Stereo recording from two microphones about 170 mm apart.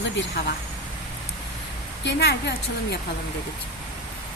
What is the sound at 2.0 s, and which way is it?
Speech, 80° left.